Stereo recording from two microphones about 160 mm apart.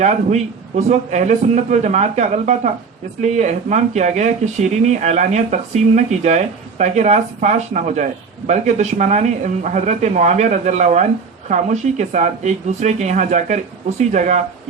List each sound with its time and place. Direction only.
0.0 s speech: 45° right (ahead or behind)